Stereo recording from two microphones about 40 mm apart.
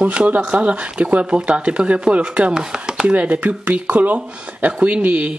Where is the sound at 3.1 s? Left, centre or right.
Right.